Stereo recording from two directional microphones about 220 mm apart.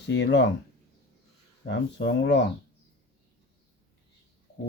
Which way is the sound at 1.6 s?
50° left (ahead or behind).